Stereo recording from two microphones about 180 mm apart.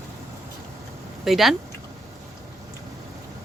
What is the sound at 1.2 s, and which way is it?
Speech, centre (ahead or behind).